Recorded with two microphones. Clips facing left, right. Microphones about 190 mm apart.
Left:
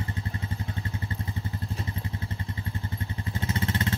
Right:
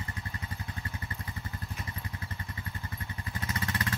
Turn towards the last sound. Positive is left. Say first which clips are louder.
# left 5 dB
turn(degrees=25)  # may be behind; listen again after turning